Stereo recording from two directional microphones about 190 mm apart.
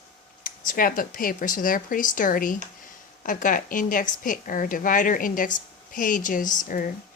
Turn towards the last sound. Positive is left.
turn(degrees=45)  # may be behind; listen again after turning